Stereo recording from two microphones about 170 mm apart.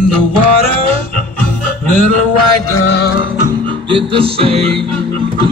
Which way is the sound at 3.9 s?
35° right (ahead or behind).